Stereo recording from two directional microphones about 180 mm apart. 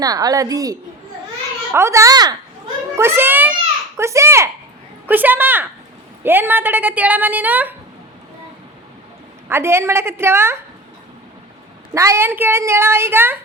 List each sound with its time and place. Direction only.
0.0 s a woman's voice: 20° right (ahead or behind)
9.5 s a woman's voice: 15° right (ahead or behind)
11.9 s a woman's voice: 15° right (ahead or behind)